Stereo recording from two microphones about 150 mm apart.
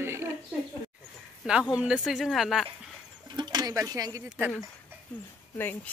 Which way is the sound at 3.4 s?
25° right (ahead or behind).